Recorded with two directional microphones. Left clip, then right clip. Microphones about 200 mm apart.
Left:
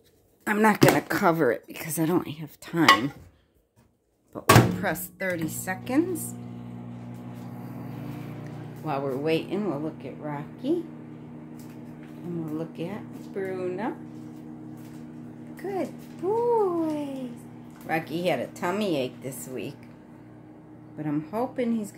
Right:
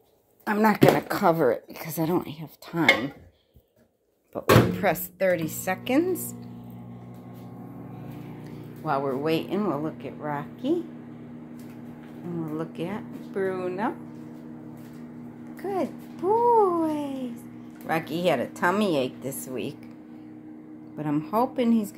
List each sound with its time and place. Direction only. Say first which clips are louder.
0.5 s speech: even; 25° left (ahead or behind)
4.3 s speech: left 1 dB; centre (ahead or behind)
8.8 s speech: right 2 dB; centre (ahead or behind)
12.5 s speech: right 2 dB; 5° right (ahead or behind)
15.7 s a woman's voice: right 3 dB; 10° right (ahead or behind)
21.0 s a woman's voice: right 4 dB; 15° right (ahead or behind)